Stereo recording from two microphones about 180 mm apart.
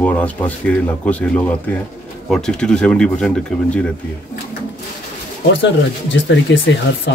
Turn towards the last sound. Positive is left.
turn(degrees=90)